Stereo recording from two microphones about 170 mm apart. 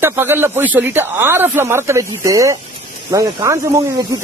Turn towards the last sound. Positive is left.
turn(degrees=-20)  # may be behind; listen again after turning